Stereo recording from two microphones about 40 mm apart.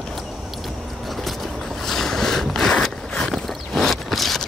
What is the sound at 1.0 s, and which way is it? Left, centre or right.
Boat, centre.